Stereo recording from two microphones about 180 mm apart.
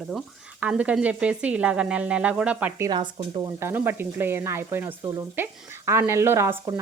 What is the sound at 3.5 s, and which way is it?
Speech, 15° right (ahead or behind).